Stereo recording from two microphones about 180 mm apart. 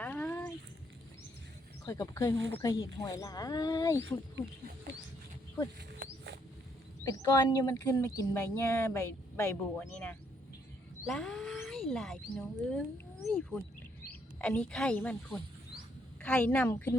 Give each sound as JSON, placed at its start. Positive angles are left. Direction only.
{"t": 0.0, "sound": "a sound", "side_deg": 10}
{"t": 1.8, "sound": "speech", "side_deg": 20}
{"t": 7.0, "sound": "speech", "side_deg": 20}